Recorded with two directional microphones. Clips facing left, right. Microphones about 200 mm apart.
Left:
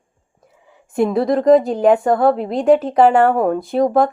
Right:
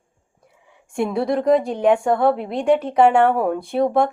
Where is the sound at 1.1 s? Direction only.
Centre (ahead or behind).